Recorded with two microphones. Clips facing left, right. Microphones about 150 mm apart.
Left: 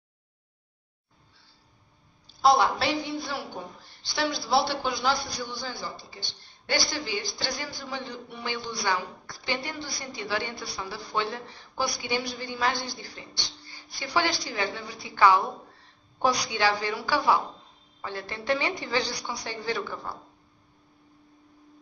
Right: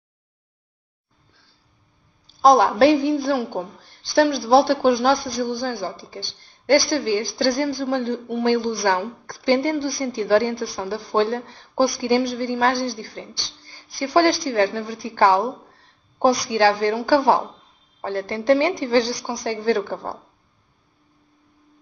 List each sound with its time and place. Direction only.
2.4 s a woman's voice: 45° right (ahead or behind)
7.8 s speech: 75° right (ahead or behind)
8.5 s a woman's voice: 45° right (ahead or behind)